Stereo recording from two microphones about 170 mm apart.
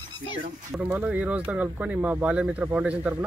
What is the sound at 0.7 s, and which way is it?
Speech, 10° right (ahead or behind).